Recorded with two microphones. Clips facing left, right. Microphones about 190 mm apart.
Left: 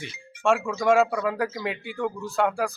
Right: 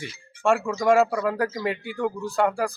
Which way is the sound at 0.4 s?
Centre (ahead or behind).